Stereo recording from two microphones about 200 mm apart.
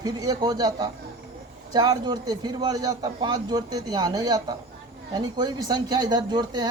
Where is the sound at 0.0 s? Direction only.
20° right (ahead or behind).